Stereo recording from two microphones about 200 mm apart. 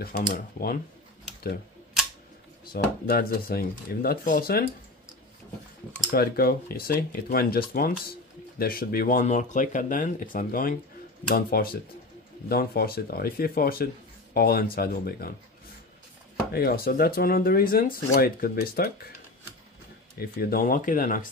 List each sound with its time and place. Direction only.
0.0 s speech: 50° left (ahead or behind)
2.7 s speech: 50° left (ahead or behind)
6.1 s speech: 50° left (ahead or behind)
16.5 s speech: 50° left (ahead or behind)
20.2 s speech: 50° left (ahead or behind)